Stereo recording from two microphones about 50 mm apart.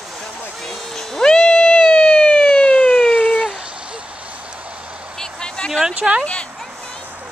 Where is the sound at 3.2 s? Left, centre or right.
Left.